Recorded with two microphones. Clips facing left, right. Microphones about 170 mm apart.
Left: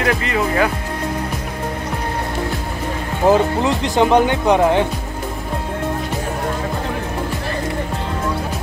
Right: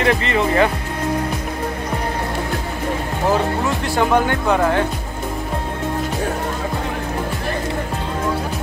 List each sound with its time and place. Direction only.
0.0 s speech: 5° left (ahead or behind)
3.3 s speech: 15° left (ahead or behind)